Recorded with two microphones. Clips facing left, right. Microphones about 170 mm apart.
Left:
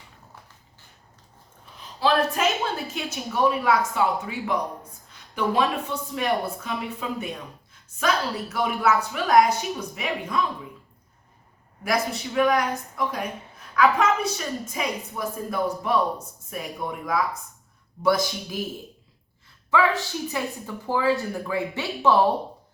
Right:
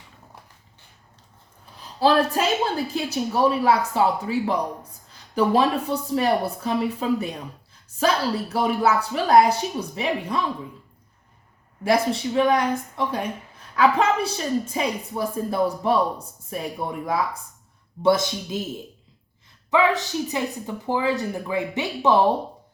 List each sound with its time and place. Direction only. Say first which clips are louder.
2.0 s a woman's voice: right 3 dB; 35° right (ahead or behind)
11.8 s a woman's voice: right 5 dB; 30° right (ahead or behind)
19.7 s speech: right 2 dB; 20° right (ahead or behind)